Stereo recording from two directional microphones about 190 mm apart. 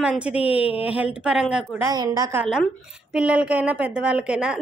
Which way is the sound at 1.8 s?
20° right (ahead or behind).